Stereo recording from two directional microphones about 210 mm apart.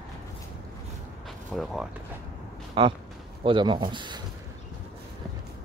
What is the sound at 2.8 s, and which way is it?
Speech, 25° right (ahead or behind).